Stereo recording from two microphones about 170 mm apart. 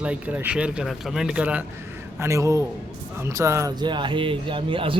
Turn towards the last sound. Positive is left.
turn(degrees=-30)  # may be behind; listen again after turning